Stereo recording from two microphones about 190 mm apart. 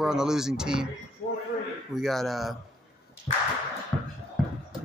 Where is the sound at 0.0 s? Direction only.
Centre (ahead or behind).